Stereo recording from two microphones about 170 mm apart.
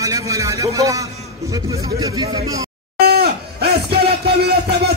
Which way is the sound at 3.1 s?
70° right (ahead or behind).